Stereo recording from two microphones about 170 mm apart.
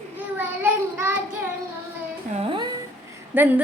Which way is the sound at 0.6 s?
15° right (ahead or behind).